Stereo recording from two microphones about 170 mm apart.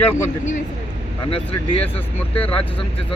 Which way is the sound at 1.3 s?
35° left (ahead or behind).